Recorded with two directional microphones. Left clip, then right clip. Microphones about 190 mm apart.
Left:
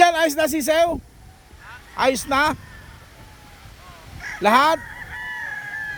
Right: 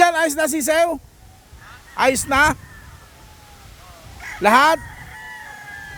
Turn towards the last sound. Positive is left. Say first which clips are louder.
# right 2 dB
turn(degrees=-15)  # may be behind; listen again after turning